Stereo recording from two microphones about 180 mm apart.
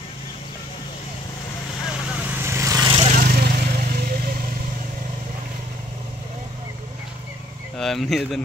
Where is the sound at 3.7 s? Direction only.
50° right (ahead or behind).